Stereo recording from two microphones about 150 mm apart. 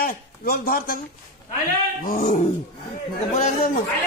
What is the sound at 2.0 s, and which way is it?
Dog, 55° left (ahead or behind).